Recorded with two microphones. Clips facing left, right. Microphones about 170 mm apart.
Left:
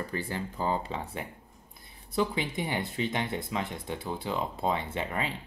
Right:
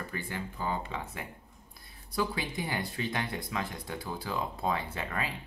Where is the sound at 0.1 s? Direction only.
35° left (ahead or behind).